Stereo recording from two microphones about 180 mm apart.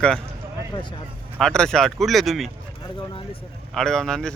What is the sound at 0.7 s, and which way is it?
Speech, 25° left (ahead or behind).